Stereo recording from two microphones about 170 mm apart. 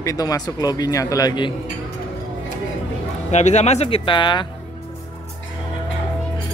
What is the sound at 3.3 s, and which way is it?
Speech, 40° left (ahead or behind).